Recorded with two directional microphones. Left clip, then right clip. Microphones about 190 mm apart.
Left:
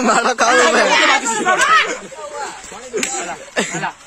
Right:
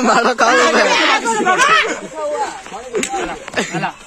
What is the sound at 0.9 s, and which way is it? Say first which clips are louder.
Speech: even; 35° left (ahead or behind).